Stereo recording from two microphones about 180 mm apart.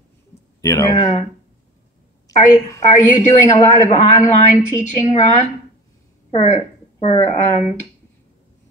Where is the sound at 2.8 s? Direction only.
40° left (ahead or behind).